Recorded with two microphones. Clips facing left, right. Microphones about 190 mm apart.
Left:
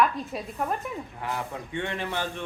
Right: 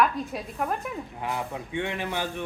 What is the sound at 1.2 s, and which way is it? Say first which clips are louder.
A man's voice: right 2 dB; 15° right (ahead or behind).